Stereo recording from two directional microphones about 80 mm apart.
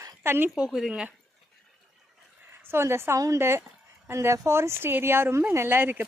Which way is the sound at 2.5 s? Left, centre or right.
Right.